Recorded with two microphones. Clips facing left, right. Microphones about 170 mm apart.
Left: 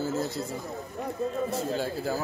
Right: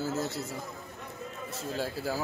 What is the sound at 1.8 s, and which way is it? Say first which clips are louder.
Speech: left 3 dB; 5° right (ahead or behind).